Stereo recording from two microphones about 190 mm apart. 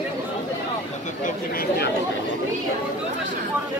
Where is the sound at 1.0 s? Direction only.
50° left (ahead or behind).